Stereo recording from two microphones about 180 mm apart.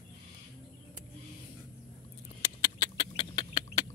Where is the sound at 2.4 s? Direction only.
25° left (ahead or behind).